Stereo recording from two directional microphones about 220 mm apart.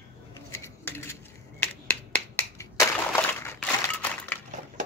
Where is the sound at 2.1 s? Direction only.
15° left (ahead or behind).